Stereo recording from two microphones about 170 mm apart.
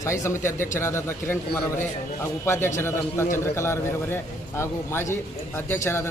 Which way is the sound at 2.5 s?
15° left (ahead or behind).